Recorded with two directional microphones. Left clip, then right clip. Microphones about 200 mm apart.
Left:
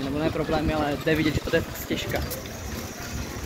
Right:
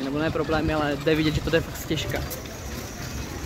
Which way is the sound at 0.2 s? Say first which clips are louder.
Right 1 dB; 25° right (ahead or behind).